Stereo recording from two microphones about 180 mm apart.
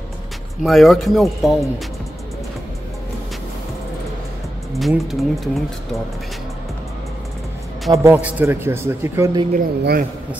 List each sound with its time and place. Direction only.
0.7 s speech: centre (ahead or behind)
4.7 s speech: centre (ahead or behind)
7.9 s a man's voice: 15° right (ahead or behind)
9.5 s speech: 50° right (ahead or behind)